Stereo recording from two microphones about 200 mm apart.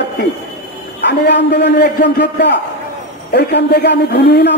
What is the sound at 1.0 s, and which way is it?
A man's voice, 55° left (ahead or behind).